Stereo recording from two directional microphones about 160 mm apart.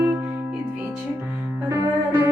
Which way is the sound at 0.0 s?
10° right (ahead or behind).